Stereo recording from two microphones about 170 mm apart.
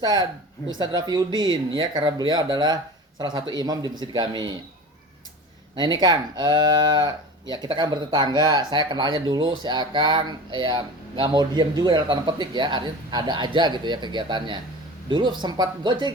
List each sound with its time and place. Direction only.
0.0 s speech: 25° right (ahead or behind)
5.7 s speech: 25° right (ahead or behind)